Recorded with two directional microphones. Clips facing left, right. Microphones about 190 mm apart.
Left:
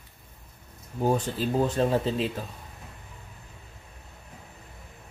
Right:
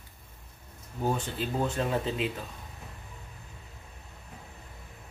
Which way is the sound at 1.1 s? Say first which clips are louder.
Left 5 dB; 40° left (ahead or behind).